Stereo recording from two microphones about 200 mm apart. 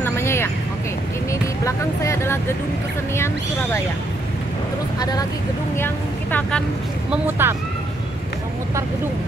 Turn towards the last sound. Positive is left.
turn(degrees=-10)  # may be behind; listen again after turning